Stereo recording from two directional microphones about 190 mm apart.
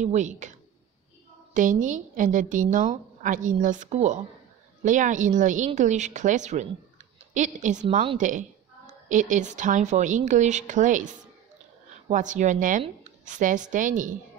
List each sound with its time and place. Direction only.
0.0 s a woman's voice: 40° right (ahead or behind)
12.1 s a woman's voice: 40° right (ahead or behind)